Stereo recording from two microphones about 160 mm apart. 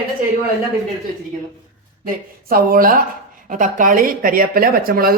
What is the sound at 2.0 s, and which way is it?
A woman's voice, 65° right (ahead or behind).